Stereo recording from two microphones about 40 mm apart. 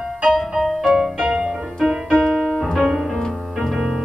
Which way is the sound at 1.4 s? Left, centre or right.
Centre.